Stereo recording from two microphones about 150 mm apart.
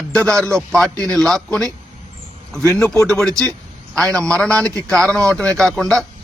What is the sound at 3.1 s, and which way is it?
Speech, 5° left (ahead or behind).